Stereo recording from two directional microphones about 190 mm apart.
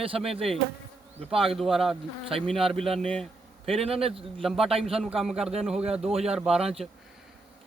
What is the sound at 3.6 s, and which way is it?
Speech, 30° right (ahead or behind).